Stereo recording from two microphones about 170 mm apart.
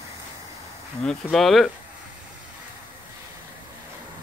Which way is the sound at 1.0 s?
Centre (ahead or behind).